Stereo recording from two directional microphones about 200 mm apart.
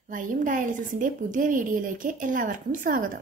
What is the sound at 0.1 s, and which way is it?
A woman's voice, 40° right (ahead or behind).